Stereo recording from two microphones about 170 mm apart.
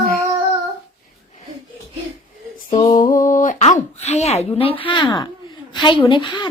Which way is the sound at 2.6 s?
40° left (ahead or behind).